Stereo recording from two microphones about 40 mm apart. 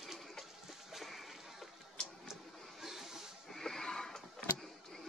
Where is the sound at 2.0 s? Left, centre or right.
Left.